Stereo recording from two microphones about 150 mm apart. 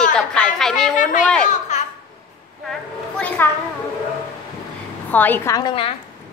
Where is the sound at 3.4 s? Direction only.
15° left (ahead or behind).